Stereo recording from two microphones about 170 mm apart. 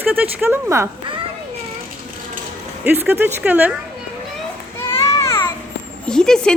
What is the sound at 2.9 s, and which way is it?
Speech, 10° right (ahead or behind).